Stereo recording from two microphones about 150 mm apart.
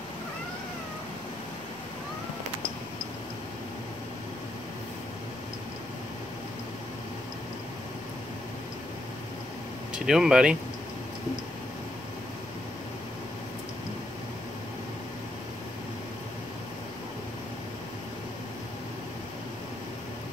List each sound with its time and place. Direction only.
9.9 s speech: 5° right (ahead or behind)